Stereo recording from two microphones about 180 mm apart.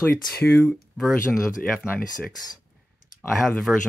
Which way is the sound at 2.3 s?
20° left (ahead or behind).